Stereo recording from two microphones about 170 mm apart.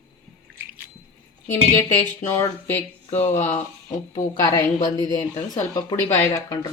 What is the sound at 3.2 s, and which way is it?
Speech, 45° left (ahead or behind).